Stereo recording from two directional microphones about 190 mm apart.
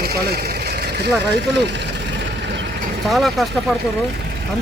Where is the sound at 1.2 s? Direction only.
60° right (ahead or behind).